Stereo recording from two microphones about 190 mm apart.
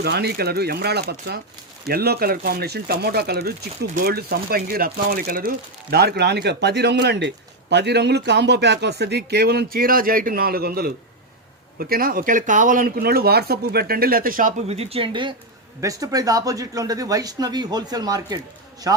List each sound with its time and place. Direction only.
0.0 s a man's voice: 60° right (ahead or behind); by 19.0 s 15° right (ahead or behind)